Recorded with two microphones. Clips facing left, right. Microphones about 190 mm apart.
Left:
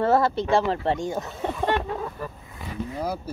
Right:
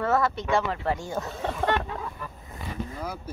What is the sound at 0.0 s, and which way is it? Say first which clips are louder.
Speech: left 4 dB; 30° left (ahead or behind).